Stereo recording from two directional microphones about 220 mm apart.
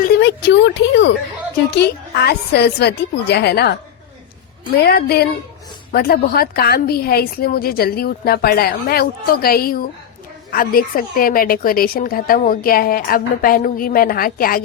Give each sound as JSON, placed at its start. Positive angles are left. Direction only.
{"t": 0.1, "sound": "a woman's voice", "side_deg": 50}
{"t": 4.9, "sound": "a woman's voice", "side_deg": 45}